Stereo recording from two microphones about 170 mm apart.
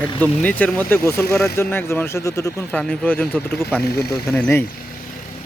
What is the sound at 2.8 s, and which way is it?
Speech, 10° left (ahead or behind).